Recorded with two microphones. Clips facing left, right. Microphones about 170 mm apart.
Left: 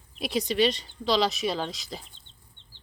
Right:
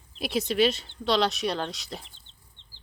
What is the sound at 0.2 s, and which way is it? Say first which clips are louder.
Speech: right 1 dB; centre (ahead or behind).